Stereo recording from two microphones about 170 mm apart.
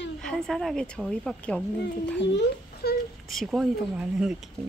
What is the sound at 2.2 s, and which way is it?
Speech, 90° left.